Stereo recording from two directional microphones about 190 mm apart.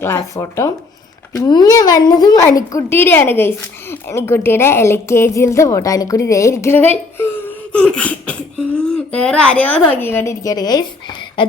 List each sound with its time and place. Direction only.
0.0 s a woman's voice: 15° left (ahead or behind)